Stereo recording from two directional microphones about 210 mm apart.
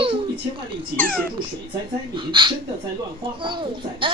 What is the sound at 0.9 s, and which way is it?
Speech, 5° left (ahead or behind).